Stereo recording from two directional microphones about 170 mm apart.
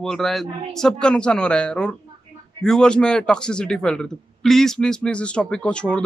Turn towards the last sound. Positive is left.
turn(degrees=5)  # may be behind; listen again after turning